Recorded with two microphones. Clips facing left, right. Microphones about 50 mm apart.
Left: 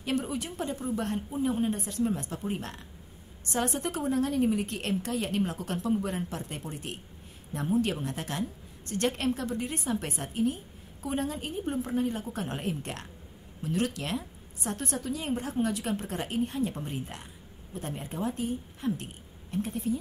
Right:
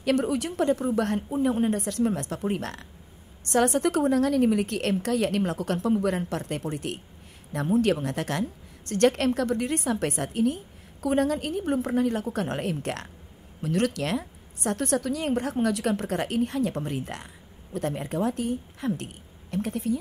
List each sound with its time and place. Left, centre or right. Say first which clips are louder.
0.0 s a woman's voice: right 7 dB; right